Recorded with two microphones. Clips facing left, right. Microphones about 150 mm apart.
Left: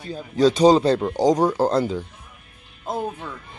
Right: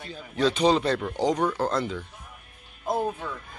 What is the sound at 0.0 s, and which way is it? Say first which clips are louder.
Speech: left 7 dB; 35° left (ahead or behind).